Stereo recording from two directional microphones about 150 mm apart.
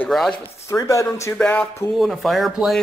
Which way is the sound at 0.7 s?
20° left (ahead or behind).